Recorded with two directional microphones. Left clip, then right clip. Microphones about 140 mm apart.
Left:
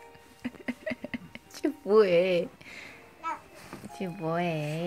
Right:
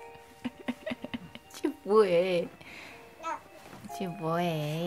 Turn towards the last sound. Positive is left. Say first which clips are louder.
# even
turn(degrees=0)  # may be behind; listen again after turning